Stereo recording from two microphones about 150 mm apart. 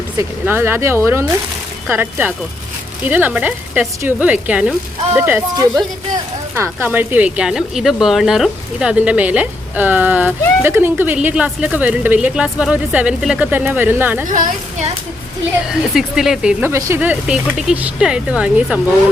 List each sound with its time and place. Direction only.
0.2 s a woman's voice: 15° right (ahead or behind)
14.3 s a woman's voice: 60° right (ahead or behind)
15.7 s a woman's voice: 5° right (ahead or behind)